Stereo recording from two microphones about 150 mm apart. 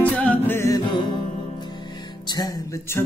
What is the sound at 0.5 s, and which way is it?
Music, 20° left (ahead or behind).